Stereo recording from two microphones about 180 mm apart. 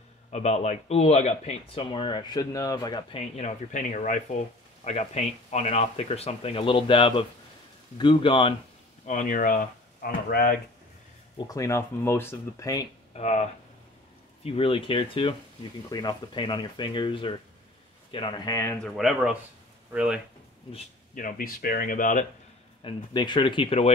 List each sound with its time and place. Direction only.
0.3 s speech: 35° left (ahead or behind)
9.0 s speech: 45° left (ahead or behind)
11.3 s speech: 20° left (ahead or behind)
13.1 s speech: 40° left (ahead or behind); by 18.8 s 15° left (ahead or behind)
18.8 s speech: centre (ahead or behind)
21.1 s speech: 50° left (ahead or behind)
22.8 s speech: 25° left (ahead or behind)